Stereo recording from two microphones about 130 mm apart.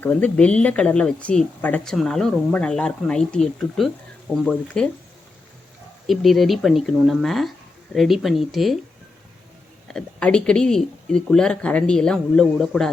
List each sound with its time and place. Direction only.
0.0 s speech: 10° left (ahead or behind)
6.1 s speech: centre (ahead or behind)
9.9 s speech: 10° left (ahead or behind)